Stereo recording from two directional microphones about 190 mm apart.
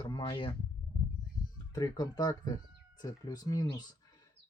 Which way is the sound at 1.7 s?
20° left (ahead or behind).